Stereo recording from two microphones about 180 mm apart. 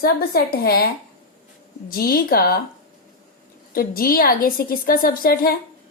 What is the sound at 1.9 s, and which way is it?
Speech, 55° left (ahead or behind).